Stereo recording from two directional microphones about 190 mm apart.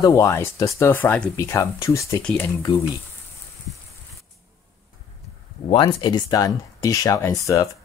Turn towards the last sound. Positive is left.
turn(degrees=15)  # may be behind; listen again after turning